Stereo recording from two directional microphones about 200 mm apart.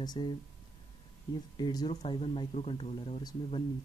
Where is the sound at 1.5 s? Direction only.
20° left (ahead or behind).